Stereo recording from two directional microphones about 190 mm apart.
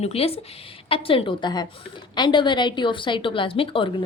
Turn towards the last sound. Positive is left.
turn(degrees=30)  # may be behind; listen again after turning